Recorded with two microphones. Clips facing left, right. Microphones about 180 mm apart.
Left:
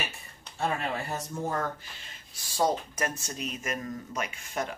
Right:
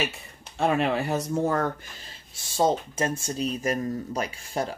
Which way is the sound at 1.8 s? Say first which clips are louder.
Right 3 dB; 35° right (ahead or behind).